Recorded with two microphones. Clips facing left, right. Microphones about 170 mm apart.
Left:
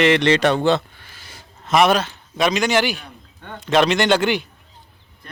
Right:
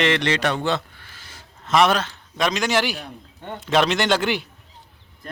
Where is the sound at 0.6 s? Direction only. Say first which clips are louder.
Left 6 dB; 25° left (ahead or behind).